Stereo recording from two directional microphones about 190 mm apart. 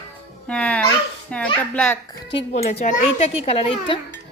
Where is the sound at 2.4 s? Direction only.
35° left (ahead or behind).